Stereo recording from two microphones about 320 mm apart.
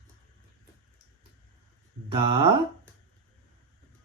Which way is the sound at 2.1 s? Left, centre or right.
Centre.